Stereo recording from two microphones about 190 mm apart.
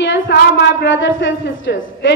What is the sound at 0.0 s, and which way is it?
A woman's voice, 65° left (ahead or behind).